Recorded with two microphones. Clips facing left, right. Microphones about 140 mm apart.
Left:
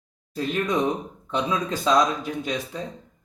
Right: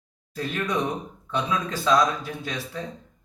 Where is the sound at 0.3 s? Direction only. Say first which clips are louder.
Left 3 dB; 20° left (ahead or behind).